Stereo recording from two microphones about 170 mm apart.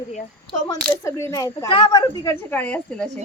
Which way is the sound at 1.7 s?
30° left (ahead or behind).